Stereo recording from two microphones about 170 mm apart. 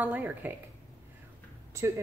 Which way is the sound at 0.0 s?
10° right (ahead or behind).